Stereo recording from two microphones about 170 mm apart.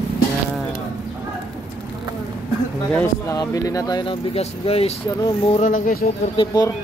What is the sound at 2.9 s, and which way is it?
Speech, 20° left (ahead or behind).